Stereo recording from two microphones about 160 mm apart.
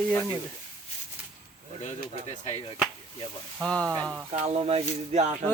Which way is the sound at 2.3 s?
45° left (ahead or behind).